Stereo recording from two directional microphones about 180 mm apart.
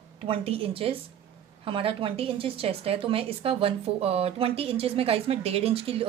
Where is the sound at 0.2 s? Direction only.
30° right (ahead or behind).